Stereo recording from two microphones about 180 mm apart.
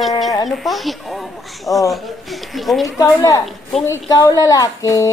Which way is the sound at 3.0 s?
20° left (ahead or behind).